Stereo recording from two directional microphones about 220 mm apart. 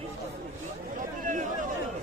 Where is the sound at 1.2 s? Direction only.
35° right (ahead or behind).